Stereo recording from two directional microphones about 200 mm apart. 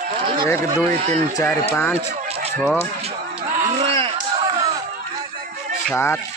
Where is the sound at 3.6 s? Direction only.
30° right (ahead or behind).